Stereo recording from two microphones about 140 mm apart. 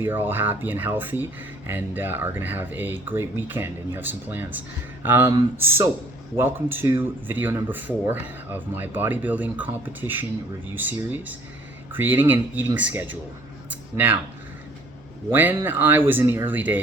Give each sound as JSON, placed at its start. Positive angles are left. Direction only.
{"t": 0.0, "sound": "speech", "side_deg": -15}
{"t": 13.7, "sound": "a sound", "side_deg": -10}
{"t": 15.3, "sound": "speech", "side_deg": -15}